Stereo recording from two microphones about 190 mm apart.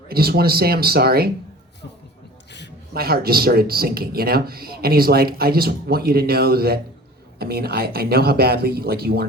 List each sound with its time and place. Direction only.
0.1 s speech: 55° right (ahead or behind)
2.5 s a sound: 65° left (ahead or behind)
2.9 s speech: 55° right (ahead or behind)